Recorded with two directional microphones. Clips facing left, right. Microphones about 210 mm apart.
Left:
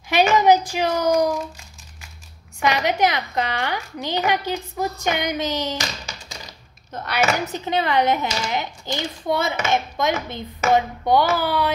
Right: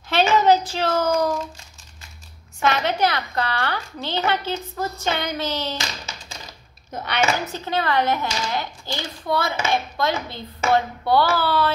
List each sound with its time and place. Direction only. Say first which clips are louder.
0.1 s a woman's voice: left 1 dB; 15° left (ahead or behind)
2.6 s a woman's voice: left 1 dB; 15° left (ahead or behind)
7.3 s a child's voice: left 2 dB; 15° left (ahead or behind)